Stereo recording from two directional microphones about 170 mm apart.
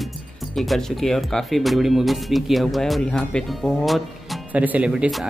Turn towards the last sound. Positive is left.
turn(degrees=0)  # may be behind; listen again after turning